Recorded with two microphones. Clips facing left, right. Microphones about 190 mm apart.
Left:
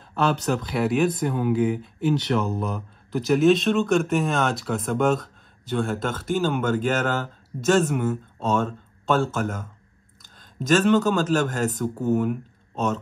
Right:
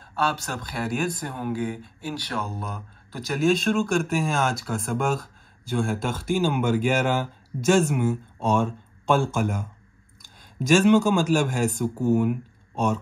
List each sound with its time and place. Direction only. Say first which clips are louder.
0.7 s speech: left 4 dB; centre (ahead or behind)
2.0 s speech: left 9 dB; 20° left (ahead or behind)
3.3 s a man's voice: left 2 dB; centre (ahead or behind)